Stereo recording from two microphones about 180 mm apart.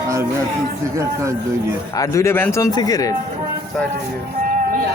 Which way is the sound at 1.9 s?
20° left (ahead or behind).